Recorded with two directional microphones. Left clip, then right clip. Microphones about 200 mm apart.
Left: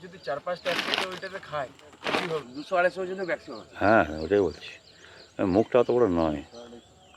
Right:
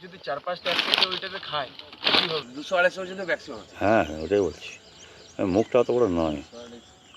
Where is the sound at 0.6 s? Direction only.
15° right (ahead or behind).